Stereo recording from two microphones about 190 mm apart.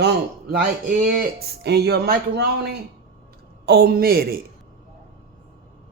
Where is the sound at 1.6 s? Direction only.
60° right (ahead or behind).